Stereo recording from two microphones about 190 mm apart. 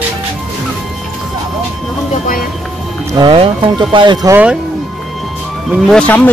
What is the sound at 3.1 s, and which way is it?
Speech, 25° right (ahead or behind).